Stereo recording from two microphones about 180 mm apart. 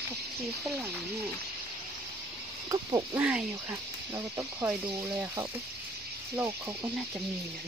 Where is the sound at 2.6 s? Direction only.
20° right (ahead or behind).